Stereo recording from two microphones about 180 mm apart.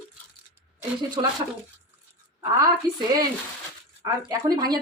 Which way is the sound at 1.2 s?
25° right (ahead or behind).